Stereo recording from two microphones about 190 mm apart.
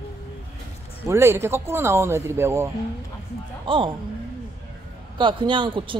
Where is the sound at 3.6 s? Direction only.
25° right (ahead or behind).